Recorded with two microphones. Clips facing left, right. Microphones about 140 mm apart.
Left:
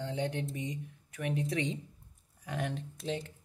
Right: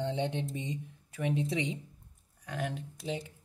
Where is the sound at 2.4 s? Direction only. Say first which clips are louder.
Even; centre (ahead or behind).